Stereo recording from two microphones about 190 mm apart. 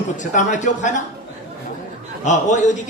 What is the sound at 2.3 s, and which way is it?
Speech, 40° left (ahead or behind).